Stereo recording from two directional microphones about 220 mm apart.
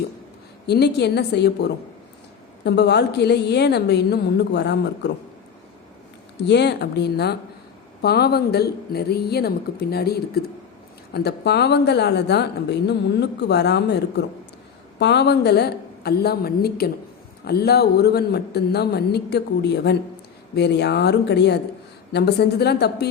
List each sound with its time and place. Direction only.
0.7 s a woman's voice: 50° left (ahead or behind)
6.4 s a woman's voice: 50° left (ahead or behind)